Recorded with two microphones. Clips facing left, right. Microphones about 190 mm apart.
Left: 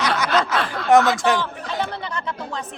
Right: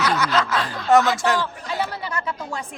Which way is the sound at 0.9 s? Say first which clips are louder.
Left 1 dB; 15° left (ahead or behind).